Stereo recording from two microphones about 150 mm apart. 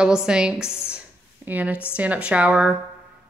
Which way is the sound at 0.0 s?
5° right (ahead or behind).